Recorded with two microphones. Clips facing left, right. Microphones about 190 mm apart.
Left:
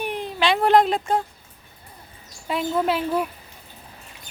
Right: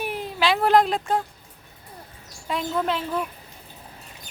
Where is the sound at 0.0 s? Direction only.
5° right (ahead or behind).